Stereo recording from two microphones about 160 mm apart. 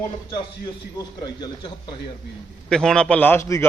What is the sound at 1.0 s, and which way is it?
Speech, 25° left (ahead or behind).